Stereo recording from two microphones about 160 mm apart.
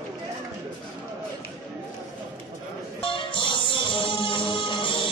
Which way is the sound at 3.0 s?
30° left (ahead or behind).